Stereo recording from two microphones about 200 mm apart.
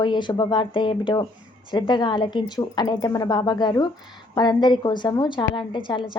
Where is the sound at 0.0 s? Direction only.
25° left (ahead or behind).